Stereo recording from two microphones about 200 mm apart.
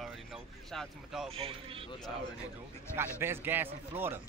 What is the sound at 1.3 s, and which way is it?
Speech, 25° right (ahead or behind).